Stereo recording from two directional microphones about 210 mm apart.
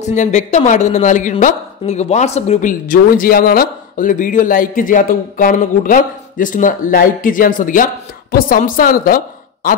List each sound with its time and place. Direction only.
0.0 s a woman's voice: 35° left (ahead or behind)